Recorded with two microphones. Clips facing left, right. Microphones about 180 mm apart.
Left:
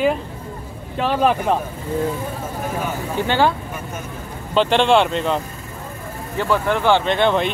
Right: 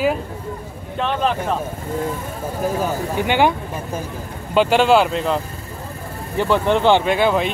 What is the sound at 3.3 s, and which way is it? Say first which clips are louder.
Speech: right 1 dB; 15° right (ahead or behind).